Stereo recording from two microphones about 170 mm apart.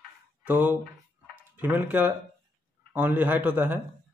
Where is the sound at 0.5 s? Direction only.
10° right (ahead or behind).